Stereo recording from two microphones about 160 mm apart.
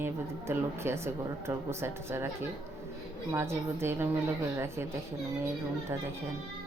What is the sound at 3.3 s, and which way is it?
Speech, 15° right (ahead or behind).